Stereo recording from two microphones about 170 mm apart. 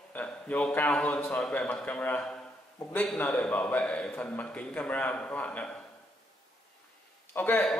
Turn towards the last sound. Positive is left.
turn(degrees=10)  # may be behind; listen again after turning